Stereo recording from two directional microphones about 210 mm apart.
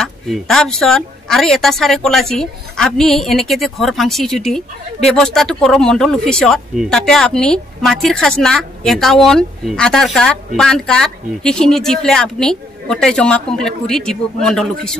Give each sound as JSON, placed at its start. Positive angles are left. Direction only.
{"t": 0.0, "sound": "a woman's voice", "side_deg": 0}